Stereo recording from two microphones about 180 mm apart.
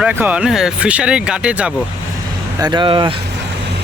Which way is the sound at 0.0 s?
10° right (ahead or behind).